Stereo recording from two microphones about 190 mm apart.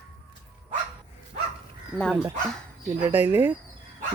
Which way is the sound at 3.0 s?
10° right (ahead or behind).